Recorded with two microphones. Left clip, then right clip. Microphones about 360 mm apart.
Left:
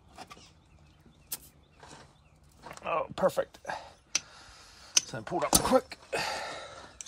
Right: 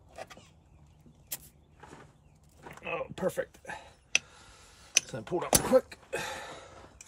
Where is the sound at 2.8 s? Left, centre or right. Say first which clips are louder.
Left 5 dB; centre.